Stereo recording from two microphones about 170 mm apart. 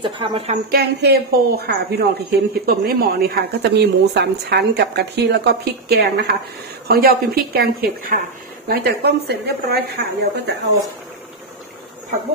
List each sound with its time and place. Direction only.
0.0 s speech: 30° right (ahead or behind)
0.7 s speech: 65° right (ahead or behind)
8.6 s speech: 70° right (ahead or behind)